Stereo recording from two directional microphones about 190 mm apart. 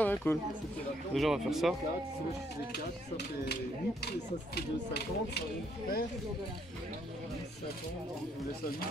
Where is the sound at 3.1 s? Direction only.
60° left (ahead or behind).